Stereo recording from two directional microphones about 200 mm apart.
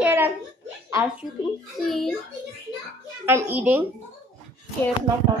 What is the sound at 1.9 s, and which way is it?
Speech, centre (ahead or behind).